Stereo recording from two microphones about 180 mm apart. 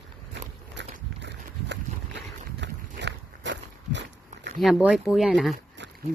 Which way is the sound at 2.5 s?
75° right (ahead or behind).